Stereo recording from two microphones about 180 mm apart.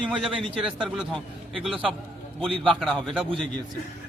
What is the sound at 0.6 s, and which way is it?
A man's voice, 5° right (ahead or behind).